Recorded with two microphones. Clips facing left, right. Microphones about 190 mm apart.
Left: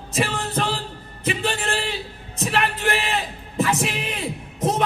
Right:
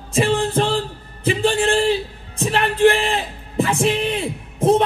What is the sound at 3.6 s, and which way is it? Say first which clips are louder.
Music: right 5 dB; 30° right (ahead or behind).